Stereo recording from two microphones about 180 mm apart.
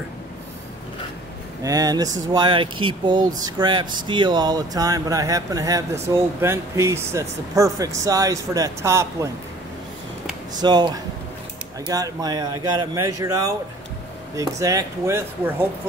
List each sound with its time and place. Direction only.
1.6 s speech: 20° right (ahead or behind)
10.6 s speech: 25° right (ahead or behind)
11.9 s speech: 20° right (ahead or behind)